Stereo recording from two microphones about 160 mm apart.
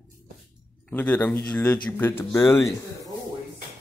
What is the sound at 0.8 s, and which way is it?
Speech, 10° left (ahead or behind).